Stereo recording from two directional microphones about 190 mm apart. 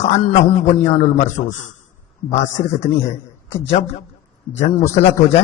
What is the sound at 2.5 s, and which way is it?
Speech, 15° left (ahead or behind).